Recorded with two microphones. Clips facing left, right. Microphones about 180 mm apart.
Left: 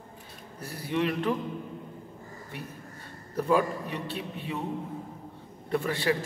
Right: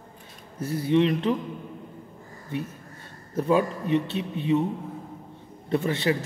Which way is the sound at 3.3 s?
20° right (ahead or behind).